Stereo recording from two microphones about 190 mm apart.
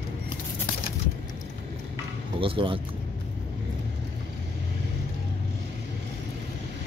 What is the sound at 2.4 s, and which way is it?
Speech, 25° right (ahead or behind).